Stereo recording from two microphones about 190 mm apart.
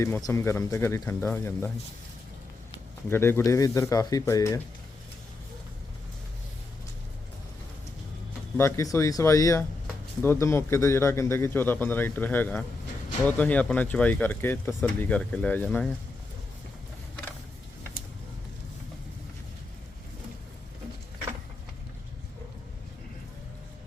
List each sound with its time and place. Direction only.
0.0 s speech: 15° left (ahead or behind)
3.1 s speech: 10° left (ahead or behind)
8.5 s speech: 15° left (ahead or behind)